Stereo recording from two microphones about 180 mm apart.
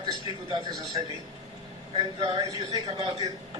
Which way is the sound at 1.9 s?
35° right (ahead or behind).